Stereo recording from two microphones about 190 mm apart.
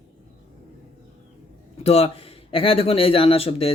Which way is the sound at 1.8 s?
30° left (ahead or behind).